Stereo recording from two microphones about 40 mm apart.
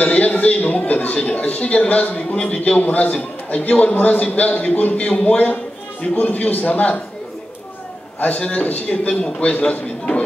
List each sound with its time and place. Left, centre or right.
0.0 s a man's voice: left
4.9 s a man's voice: left
8.4 s a man's voice: left